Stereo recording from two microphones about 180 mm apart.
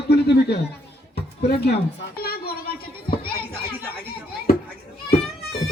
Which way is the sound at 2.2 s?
60° left (ahead or behind).